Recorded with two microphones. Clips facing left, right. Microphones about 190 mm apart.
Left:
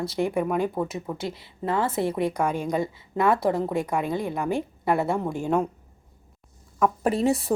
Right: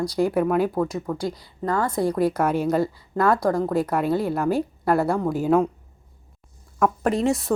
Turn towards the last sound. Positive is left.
turn(degrees=35)  # may be behind; listen again after turning